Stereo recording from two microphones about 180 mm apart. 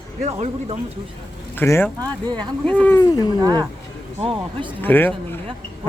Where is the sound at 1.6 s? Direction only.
15° left (ahead or behind).